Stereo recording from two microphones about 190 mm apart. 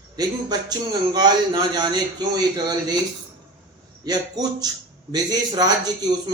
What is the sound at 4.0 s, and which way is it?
A man's voice, 20° right (ahead or behind).